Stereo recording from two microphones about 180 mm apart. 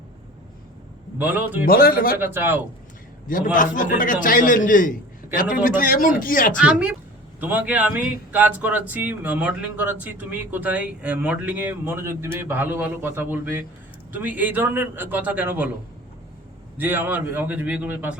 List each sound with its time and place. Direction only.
1.2 s speech: 10° right (ahead or behind)
1.6 s speech: 55° left (ahead or behind)
2.1 s speech: 10° right (ahead or behind)
3.2 s a man's voice: 50° left (ahead or behind)
6.6 s speech: 5° right (ahead or behind)
16.7 s speech: 10° right (ahead or behind)